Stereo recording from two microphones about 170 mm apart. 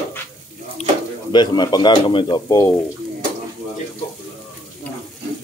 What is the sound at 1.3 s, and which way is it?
Speech, 25° left (ahead or behind).